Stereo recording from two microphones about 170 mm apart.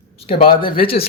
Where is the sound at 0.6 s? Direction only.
30° left (ahead or behind).